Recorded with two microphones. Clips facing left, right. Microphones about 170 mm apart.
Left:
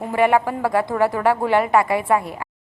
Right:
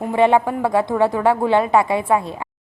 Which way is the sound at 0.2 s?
20° right (ahead or behind).